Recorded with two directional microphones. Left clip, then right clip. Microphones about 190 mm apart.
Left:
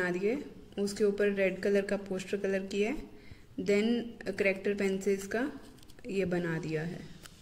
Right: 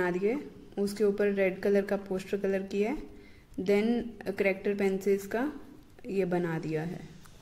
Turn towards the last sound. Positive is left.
turn(degrees=-40)  # may be behind; listen again after turning